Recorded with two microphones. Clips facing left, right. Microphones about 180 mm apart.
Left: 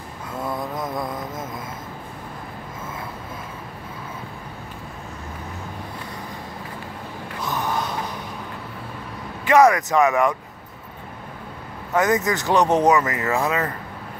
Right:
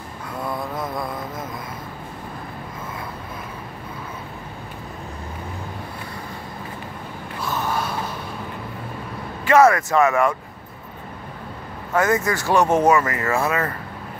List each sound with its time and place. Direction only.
0.7 s mantra: 20° left (ahead or behind)
7.3 s a sound: 15° left (ahead or behind)
9.4 s speech: 15° left (ahead or behind)
11.9 s speech: 20° left (ahead or behind)